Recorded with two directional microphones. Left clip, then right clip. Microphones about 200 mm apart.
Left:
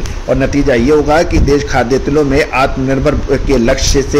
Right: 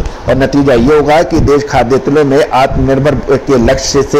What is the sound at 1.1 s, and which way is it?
A man's voice, 10° right (ahead or behind).